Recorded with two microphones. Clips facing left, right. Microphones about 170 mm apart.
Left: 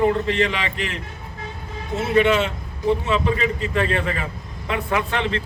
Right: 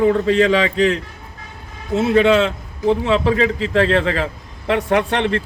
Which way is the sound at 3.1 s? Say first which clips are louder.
Right 5 dB; 90° right.